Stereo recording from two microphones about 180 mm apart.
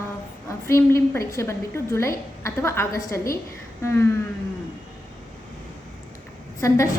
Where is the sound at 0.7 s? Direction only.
15° left (ahead or behind).